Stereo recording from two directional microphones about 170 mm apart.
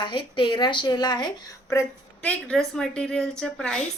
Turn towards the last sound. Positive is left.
turn(degrees=5)  # may be behind; listen again after turning